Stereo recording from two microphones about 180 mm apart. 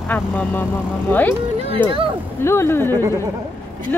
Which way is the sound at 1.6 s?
30° right (ahead or behind).